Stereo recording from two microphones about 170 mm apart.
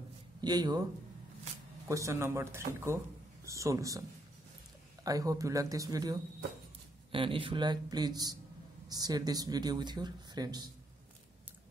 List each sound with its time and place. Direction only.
0.4 s speech: 25° right (ahead or behind)
1.9 s speech: 20° right (ahead or behind)
5.0 s speech: 20° right (ahead or behind)